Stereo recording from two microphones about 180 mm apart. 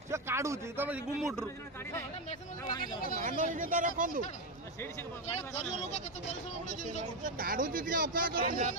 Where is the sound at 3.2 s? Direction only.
45° right (ahead or behind).